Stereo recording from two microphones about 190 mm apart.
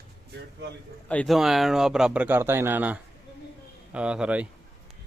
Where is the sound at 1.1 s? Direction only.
5° left (ahead or behind).